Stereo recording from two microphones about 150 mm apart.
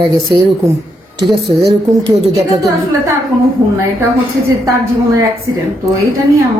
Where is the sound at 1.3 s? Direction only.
90° right.